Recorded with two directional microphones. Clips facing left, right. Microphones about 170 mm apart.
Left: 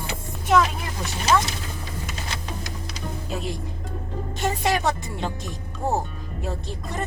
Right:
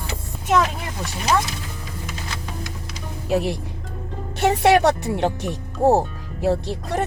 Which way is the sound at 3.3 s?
70° right (ahead or behind).